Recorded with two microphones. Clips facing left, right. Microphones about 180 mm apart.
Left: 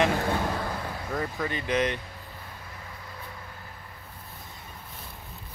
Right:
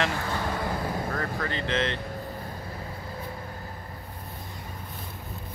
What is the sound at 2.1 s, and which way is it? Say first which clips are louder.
Vehicle: right 9 dB; 45° right (ahead or behind).